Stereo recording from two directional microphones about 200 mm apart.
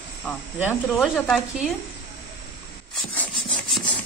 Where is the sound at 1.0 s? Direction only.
Centre (ahead or behind).